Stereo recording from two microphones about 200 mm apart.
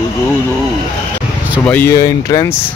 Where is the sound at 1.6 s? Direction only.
10° left (ahead or behind).